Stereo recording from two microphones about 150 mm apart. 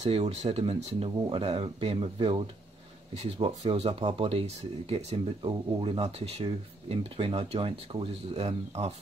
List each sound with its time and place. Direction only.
0.0 s speech: 45° right (ahead or behind)